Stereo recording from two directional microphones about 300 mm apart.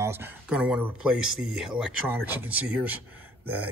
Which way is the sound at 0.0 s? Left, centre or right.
Centre.